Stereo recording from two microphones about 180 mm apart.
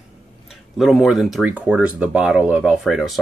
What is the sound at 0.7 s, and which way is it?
Speech, centre (ahead or behind).